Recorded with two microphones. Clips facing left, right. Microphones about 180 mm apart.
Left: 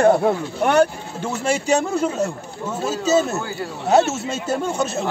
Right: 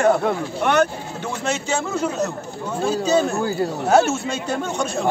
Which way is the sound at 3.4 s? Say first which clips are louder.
Right 7 dB; 40° right (ahead or behind).